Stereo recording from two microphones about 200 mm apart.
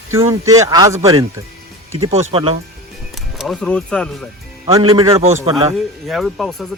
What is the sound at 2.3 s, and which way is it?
Speech, 25° right (ahead or behind).